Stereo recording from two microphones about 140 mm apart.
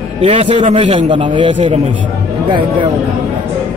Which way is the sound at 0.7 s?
40° right (ahead or behind).